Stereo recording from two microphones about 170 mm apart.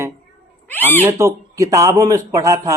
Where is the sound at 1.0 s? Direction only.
15° right (ahead or behind).